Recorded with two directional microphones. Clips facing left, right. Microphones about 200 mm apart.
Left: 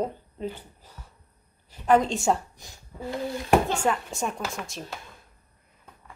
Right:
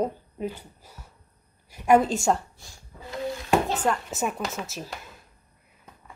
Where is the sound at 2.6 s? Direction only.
20° left (ahead or behind).